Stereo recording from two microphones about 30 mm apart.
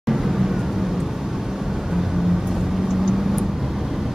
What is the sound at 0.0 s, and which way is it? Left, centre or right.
Vehicle, centre.